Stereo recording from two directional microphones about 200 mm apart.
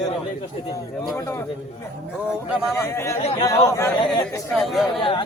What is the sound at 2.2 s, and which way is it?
Speech, 5° right (ahead or behind).